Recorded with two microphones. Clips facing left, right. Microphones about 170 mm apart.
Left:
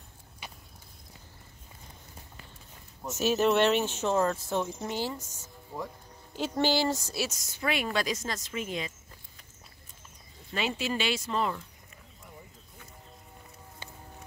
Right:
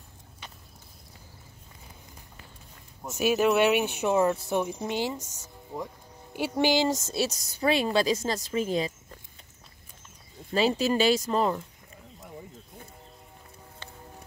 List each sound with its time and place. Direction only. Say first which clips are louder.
0.4 s a sound: left 1 dB; 10° left (ahead or behind)
3.0 s speech: right 2 dB; 10° right (ahead or behind); by 8.9 s 35° right (ahead or behind)
10.5 s speech: right 7 dB; 35° right (ahead or behind)